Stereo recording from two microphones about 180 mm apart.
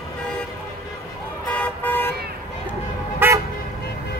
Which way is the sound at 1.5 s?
10° left (ahead or behind).